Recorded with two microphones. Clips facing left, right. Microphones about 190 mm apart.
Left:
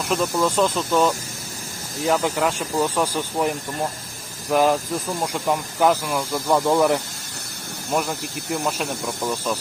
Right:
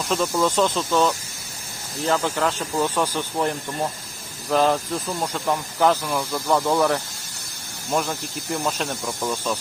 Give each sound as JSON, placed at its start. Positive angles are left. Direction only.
{"t": 0.1, "sound": "speech", "side_deg": 5}
{"t": 6.5, "sound": "speech", "side_deg": 15}
{"t": 7.9, "sound": "speech", "side_deg": 5}